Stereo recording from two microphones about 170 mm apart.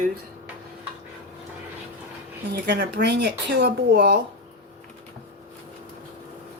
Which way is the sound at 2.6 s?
75° right (ahead or behind).